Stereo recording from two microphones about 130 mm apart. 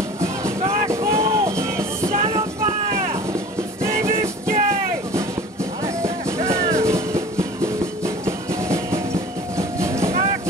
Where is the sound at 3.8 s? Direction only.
20° right (ahead or behind).